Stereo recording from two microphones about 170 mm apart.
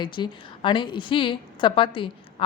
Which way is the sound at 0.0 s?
30° left (ahead or behind).